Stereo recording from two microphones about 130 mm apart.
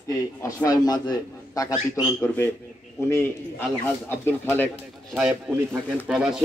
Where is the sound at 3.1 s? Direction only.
15° left (ahead or behind).